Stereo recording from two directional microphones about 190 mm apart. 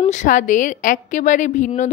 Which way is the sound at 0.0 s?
40° left (ahead or behind).